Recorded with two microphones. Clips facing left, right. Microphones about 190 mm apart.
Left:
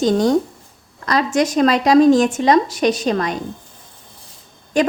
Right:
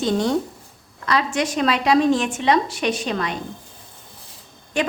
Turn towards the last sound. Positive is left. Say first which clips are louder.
# left 6 dB
turn(degrees=40)  # may be behind; listen again after turning